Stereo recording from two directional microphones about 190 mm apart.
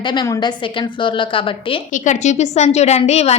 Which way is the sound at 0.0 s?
25° left (ahead or behind).